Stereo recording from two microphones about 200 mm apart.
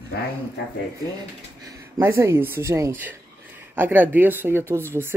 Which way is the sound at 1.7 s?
15° right (ahead or behind).